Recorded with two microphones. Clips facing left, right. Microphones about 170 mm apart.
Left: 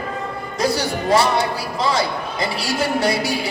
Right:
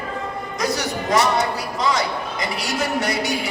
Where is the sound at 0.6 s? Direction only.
30° left (ahead or behind).